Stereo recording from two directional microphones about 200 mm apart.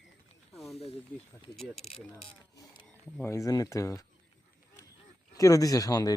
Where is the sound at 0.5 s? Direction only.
Centre (ahead or behind).